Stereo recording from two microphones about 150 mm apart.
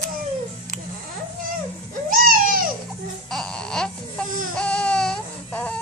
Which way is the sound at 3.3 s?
5° left (ahead or behind).